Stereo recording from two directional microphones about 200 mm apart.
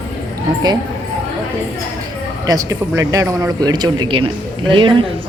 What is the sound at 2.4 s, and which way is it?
Speech, 15° right (ahead or behind).